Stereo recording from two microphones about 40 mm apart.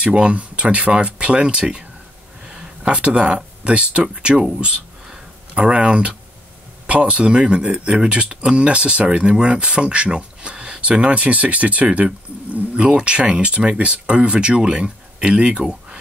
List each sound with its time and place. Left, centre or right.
0.0 s speech: right
2.4 s a sound: centre
2.8 s speech: right
5.5 s speech: right
12.7 s speech: right